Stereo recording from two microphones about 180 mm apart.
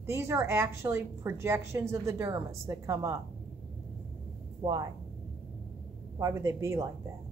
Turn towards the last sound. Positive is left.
turn(degrees=-15)  # may be behind; listen again after turning